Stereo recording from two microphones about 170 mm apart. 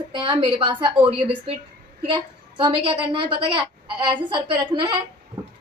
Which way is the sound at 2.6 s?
30° right (ahead or behind).